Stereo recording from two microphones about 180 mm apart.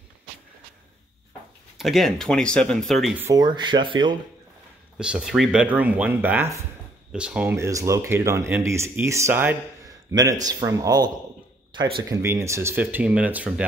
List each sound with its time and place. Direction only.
1.8 s speech: centre (ahead or behind)
3.3 s speech: 25° right (ahead or behind)
4.9 s speech: 5° right (ahead or behind)